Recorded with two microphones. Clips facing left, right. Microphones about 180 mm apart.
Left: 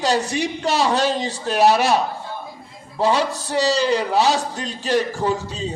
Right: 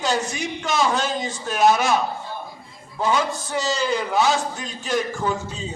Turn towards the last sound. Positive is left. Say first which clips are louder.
# left 4 dB
turn(degrees=35)  # may be behind; listen again after turning